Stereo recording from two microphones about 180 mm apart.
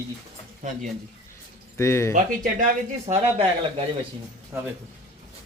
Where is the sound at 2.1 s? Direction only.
45° right (ahead or behind).